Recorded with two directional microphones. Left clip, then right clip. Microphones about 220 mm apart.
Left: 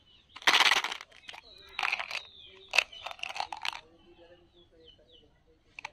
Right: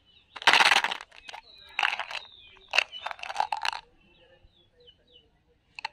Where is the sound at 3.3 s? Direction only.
20° right (ahead or behind).